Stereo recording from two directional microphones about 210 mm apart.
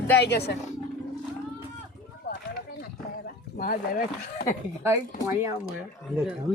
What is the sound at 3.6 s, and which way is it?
Speech, 45° left (ahead or behind).